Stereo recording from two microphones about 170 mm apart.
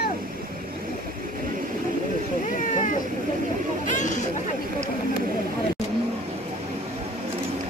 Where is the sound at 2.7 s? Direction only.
45° left (ahead or behind).